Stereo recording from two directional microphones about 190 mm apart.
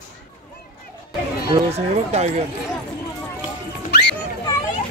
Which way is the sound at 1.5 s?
35° right (ahead or behind).